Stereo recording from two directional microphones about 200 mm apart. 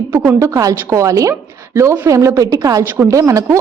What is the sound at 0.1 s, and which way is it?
A woman's voice, 15° right (ahead or behind).